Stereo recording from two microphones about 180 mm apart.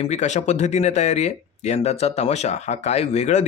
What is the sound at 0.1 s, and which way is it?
Speech, 40° left (ahead or behind).